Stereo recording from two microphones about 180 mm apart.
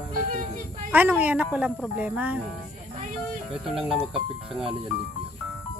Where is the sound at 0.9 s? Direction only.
10° right (ahead or behind).